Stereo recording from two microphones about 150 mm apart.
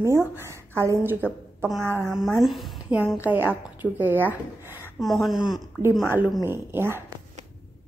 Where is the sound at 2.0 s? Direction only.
5° right (ahead or behind).